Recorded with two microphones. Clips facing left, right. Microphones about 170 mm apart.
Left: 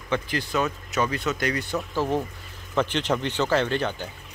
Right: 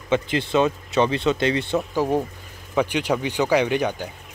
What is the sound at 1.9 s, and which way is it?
Speech, 15° right (ahead or behind).